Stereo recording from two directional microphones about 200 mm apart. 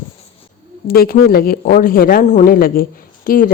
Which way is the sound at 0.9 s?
45° left (ahead or behind).